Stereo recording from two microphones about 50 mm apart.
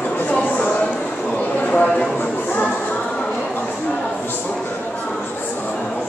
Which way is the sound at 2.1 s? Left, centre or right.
Left.